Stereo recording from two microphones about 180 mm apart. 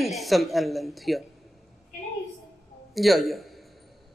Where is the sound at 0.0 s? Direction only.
Centre (ahead or behind).